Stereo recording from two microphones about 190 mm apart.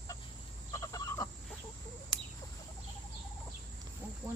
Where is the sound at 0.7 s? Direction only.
20° left (ahead or behind).